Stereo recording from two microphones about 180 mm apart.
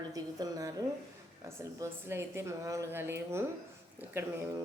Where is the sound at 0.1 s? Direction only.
20° right (ahead or behind).